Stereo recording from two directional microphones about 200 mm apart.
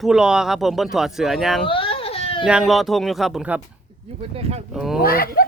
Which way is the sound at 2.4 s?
5° right (ahead or behind).